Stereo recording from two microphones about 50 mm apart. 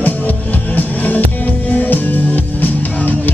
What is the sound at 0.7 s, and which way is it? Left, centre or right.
Music, left.